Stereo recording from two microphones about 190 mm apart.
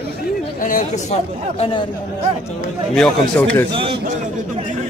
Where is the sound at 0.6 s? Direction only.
45° left (ahead or behind).